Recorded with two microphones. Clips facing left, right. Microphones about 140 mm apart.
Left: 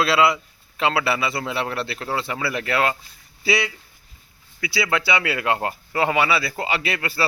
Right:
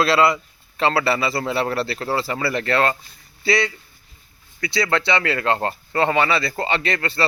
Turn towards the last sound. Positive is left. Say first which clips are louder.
# right 2 dB
turn(degrees=10)  # may be behind; listen again after turning